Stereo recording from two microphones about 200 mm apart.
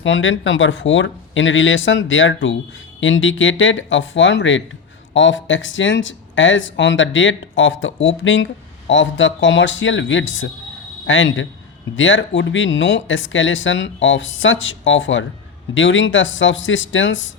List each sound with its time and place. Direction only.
0.0 s speech: 70° left (ahead or behind)